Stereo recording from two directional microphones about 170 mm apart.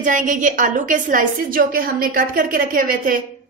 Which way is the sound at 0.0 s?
50° right (ahead or behind).